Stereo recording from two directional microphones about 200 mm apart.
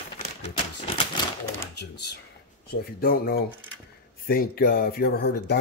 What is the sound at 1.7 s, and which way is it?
Speech, 60° left (ahead or behind).